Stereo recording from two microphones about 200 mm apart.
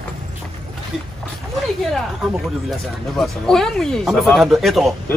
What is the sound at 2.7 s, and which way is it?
Speech, centre (ahead or behind).